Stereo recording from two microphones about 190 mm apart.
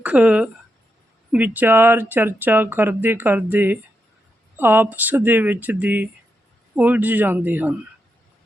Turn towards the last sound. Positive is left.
turn(degrees=-10)  # may be behind; listen again after turning